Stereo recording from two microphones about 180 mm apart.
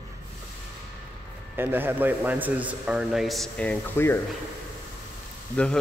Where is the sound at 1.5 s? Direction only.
10° right (ahead or behind); by 4.2 s 15° left (ahead or behind).